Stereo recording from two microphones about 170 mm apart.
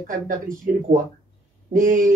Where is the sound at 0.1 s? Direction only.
50° right (ahead or behind).